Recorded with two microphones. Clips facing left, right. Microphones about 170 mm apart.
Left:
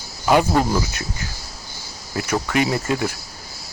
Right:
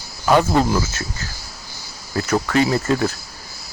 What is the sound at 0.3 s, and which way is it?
Speech, 10° left (ahead or behind).